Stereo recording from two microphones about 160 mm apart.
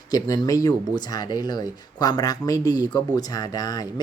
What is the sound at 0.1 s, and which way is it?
Speech, 20° left (ahead or behind).